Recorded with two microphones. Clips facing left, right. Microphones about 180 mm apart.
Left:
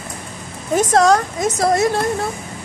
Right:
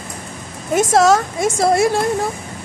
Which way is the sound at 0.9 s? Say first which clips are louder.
Right 1 dB; 5° right (ahead or behind).